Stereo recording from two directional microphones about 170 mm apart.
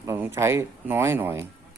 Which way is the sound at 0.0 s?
15° right (ahead or behind).